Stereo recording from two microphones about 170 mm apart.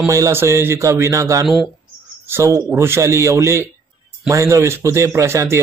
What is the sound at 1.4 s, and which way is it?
Speech, centre (ahead or behind).